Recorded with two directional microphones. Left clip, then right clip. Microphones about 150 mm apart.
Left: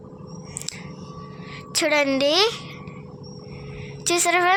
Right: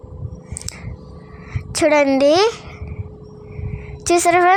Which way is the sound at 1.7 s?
45° right (ahead or behind).